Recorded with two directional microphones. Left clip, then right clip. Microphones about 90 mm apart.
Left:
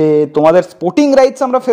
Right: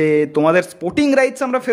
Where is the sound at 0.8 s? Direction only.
30° left (ahead or behind).